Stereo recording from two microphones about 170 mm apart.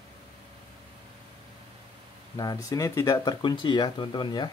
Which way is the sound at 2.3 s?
20° left (ahead or behind).